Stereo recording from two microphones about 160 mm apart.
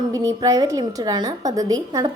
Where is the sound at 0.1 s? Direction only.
20° right (ahead or behind).